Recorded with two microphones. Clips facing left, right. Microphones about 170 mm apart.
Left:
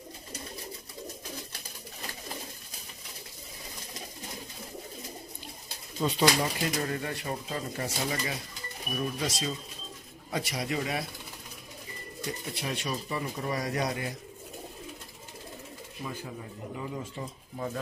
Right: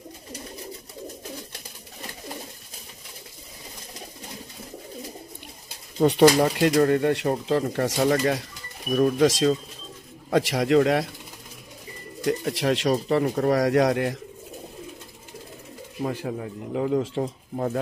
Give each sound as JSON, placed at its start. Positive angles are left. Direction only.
{"t": 5.9, "sound": "speech", "side_deg": -65}
{"t": 8.0, "sound": "speech", "side_deg": -70}
{"t": 8.9, "sound": "speech", "side_deg": -90}
{"t": 12.3, "sound": "speech", "side_deg": -85}
{"t": 13.1, "sound": "speech", "side_deg": -70}
{"t": 16.0, "sound": "speech", "side_deg": -75}